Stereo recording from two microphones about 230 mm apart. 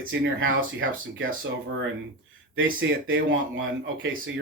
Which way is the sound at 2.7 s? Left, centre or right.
Right.